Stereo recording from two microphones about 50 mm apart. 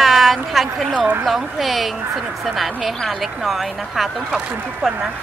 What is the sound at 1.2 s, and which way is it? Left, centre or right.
Speech, centre.